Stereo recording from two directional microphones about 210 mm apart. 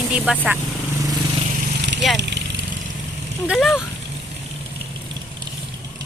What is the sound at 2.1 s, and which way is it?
Speech, 55° right (ahead or behind).